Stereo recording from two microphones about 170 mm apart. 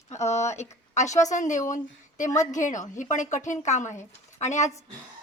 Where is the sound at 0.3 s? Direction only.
40° left (ahead or behind).